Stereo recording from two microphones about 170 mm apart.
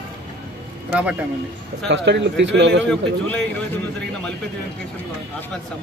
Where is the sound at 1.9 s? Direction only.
90° right.